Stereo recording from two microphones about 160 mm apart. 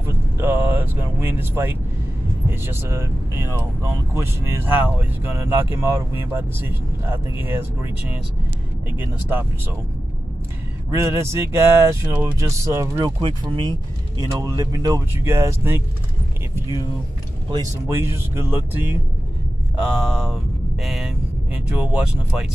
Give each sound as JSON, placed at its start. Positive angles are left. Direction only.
{"t": 0.0, "sound": "vehicle", "side_deg": -10}
{"t": 2.5, "sound": "speech", "side_deg": -15}
{"t": 10.9, "sound": "speech", "side_deg": -15}
{"t": 17.5, "sound": "speech", "side_deg": -20}